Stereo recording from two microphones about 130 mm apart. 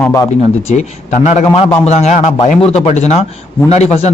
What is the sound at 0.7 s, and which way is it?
A man's voice, 60° left (ahead or behind).